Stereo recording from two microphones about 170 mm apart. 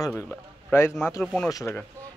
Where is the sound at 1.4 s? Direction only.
20° left (ahead or behind).